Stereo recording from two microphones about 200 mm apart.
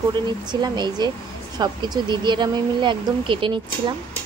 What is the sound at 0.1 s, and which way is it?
Speech, 20° right (ahead or behind).